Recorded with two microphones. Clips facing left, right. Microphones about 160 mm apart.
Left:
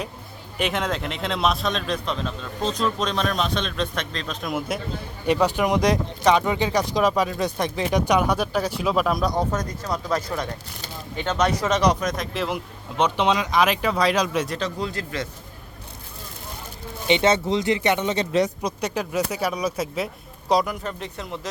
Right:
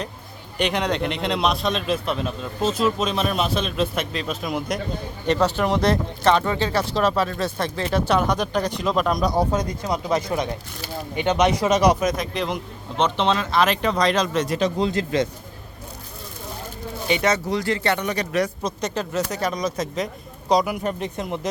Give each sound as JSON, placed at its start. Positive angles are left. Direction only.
{"t": 0.6, "sound": "a man's voice", "side_deg": 0}
{"t": 5.2, "sound": "speech", "side_deg": 10}
{"t": 9.4, "sound": "a man's voice", "side_deg": -10}
{"t": 14.6, "sound": "speech", "side_deg": -20}
{"t": 17.1, "sound": "speech", "side_deg": 25}
{"t": 18.6, "sound": "a man's voice", "side_deg": 10}
{"t": 20.7, "sound": "speech", "side_deg": -15}